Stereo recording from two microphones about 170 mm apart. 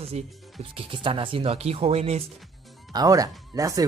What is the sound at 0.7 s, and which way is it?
Speech, 30° right (ahead or behind).